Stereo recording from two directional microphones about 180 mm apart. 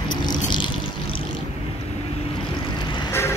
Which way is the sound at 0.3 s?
25° left (ahead or behind).